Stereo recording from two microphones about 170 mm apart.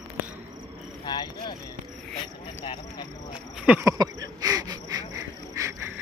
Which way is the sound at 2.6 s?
30° left (ahead or behind).